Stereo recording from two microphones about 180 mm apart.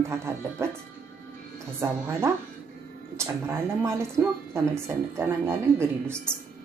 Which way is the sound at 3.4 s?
15° right (ahead or behind).